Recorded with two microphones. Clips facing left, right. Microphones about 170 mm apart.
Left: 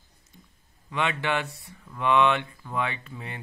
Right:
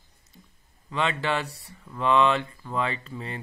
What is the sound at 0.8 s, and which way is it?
Speech, 15° left (ahead or behind).